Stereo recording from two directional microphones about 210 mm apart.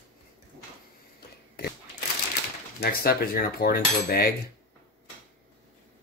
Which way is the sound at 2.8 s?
45° left (ahead or behind).